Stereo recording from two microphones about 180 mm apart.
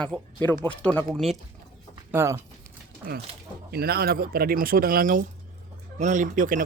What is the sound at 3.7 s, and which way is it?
Speech, 60° right (ahead or behind).